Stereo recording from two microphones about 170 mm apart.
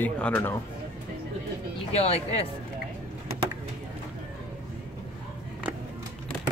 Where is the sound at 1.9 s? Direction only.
35° left (ahead or behind).